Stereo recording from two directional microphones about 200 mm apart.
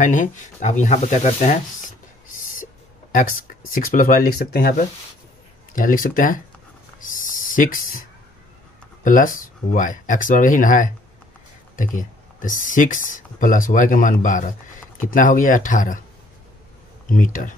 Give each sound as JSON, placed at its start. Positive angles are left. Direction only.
{"t": 0.0, "sound": "speech", "side_deg": 40}
{"t": 7.2, "sound": "a sound", "side_deg": 40}
{"t": 9.0, "sound": "speech", "side_deg": 40}
{"t": 17.2, "sound": "speech", "side_deg": 40}